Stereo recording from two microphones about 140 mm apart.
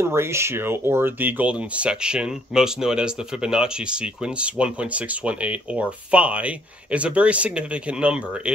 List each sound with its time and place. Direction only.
0.0 s speech: 20° right (ahead or behind)